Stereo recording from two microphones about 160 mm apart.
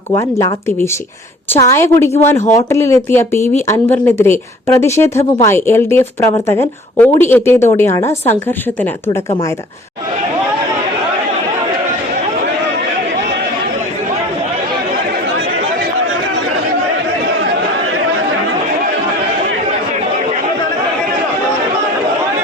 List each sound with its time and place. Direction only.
0.2 s speech: 20° left (ahead or behind)